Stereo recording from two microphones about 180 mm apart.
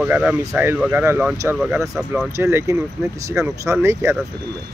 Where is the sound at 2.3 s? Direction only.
15° right (ahead or behind).